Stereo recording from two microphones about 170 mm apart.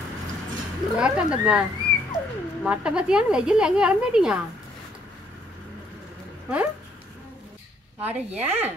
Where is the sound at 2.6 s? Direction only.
5° right (ahead or behind).